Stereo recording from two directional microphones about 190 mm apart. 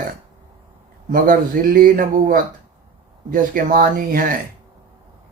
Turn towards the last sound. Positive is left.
turn(degrees=-50)  # may be behind; listen again after turning